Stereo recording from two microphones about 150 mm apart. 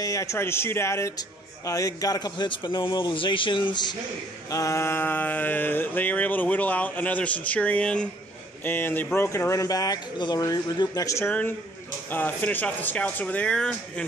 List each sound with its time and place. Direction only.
0.0 s a man's voice: 20° left (ahead or behind)
4.5 s mantra: 20° left (ahead or behind)
8.6 s a man's voice: 15° left (ahead or behind)
12.1 s mantra: 10° left (ahead or behind)